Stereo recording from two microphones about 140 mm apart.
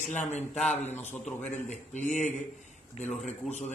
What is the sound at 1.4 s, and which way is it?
Speech, 60° left (ahead or behind).